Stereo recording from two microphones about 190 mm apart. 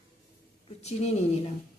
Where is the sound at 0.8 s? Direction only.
35° left (ahead or behind).